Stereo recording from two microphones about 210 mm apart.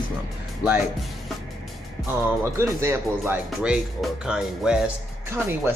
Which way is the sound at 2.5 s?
10° right (ahead or behind).